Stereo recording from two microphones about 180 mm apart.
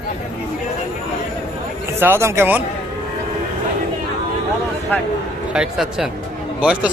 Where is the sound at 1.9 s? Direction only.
10° right (ahead or behind).